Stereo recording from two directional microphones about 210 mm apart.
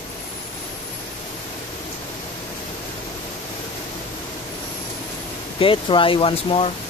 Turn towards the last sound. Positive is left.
turn(degrees=25)  # may be behind; listen again after turning